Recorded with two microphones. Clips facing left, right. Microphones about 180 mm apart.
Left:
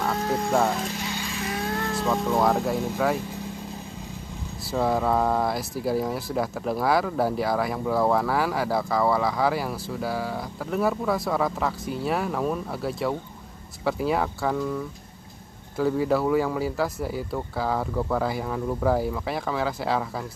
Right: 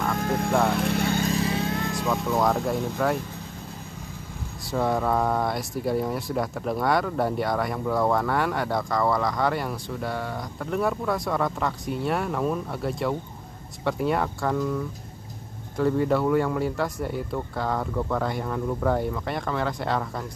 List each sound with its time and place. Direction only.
0.2 s music: 55° right (ahead or behind)
0.7 s vehicle: 60° right (ahead or behind); by 1.6 s 35° right (ahead or behind)
2.0 s speech: 5° left (ahead or behind)
4.6 s speech: centre (ahead or behind)
15.8 s speech: centre (ahead or behind)